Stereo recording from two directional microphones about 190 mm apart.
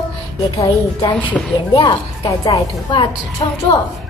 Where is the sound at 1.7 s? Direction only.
20° left (ahead or behind).